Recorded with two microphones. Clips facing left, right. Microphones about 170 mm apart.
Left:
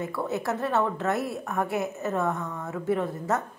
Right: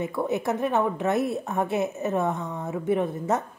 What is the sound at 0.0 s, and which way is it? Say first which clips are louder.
A woman's voice: right 3 dB; 20° right (ahead or behind).